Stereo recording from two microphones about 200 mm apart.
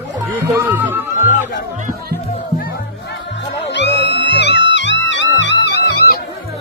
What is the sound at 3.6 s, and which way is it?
Music, 60° left (ahead or behind).